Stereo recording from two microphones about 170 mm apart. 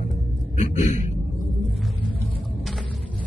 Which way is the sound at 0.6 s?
45° left (ahead or behind).